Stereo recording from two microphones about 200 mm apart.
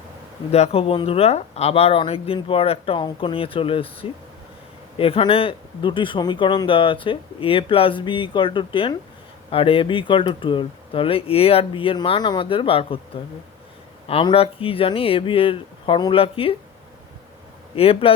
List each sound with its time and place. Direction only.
0.5 s speech: 30° left (ahead or behind)
4.9 s speech: 30° left (ahead or behind)
14.1 s speech: 30° left (ahead or behind)
17.7 s speech: 30° left (ahead or behind)